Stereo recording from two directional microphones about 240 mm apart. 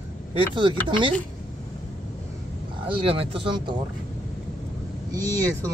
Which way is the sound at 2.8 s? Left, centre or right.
Right.